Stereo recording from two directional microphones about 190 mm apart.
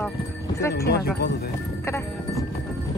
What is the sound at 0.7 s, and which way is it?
Speech, 60° left (ahead or behind).